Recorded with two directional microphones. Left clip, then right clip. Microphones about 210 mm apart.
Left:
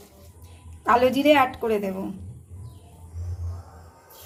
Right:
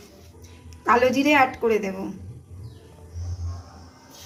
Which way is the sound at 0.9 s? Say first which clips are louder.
Even; 35° left (ahead or behind).